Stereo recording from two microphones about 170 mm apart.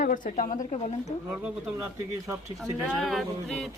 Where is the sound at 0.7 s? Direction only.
40° left (ahead or behind).